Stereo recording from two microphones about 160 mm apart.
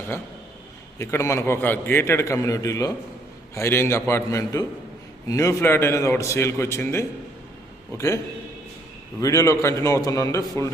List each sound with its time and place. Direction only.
0.9 s a man's voice: 15° left (ahead or behind)
9.2 s a man's voice: 20° left (ahead or behind)